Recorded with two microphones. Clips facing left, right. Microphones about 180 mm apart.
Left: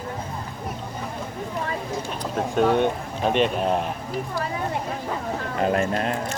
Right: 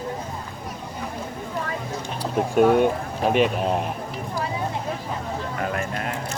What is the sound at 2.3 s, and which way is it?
A man's voice, 10° right (ahead or behind).